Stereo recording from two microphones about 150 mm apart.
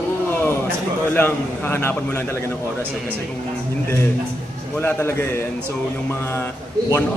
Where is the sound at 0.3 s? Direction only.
15° left (ahead or behind).